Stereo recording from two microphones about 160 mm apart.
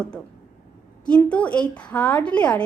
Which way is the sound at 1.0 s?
5° left (ahead or behind).